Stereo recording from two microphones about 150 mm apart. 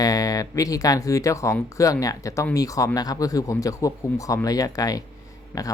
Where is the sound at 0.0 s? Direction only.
25° left (ahead or behind).